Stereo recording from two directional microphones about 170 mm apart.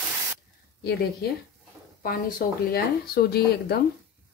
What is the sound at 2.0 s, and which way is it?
Speech, 55° left (ahead or behind).